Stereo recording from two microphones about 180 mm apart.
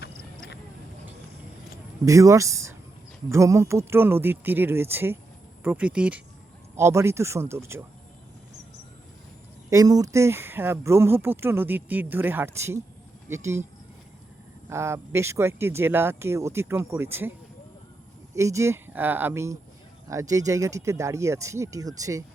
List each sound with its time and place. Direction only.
2.0 s speech: 20° right (ahead or behind)
9.6 s speech: 20° right (ahead or behind)
14.7 s speech: 15° right (ahead or behind)
18.3 s speech: 15° right (ahead or behind)